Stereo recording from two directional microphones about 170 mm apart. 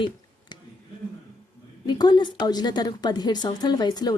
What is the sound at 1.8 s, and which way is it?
A woman's voice, 25° left (ahead or behind).